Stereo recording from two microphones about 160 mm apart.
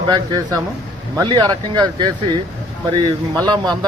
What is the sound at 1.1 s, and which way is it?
Speech, 25° right (ahead or behind).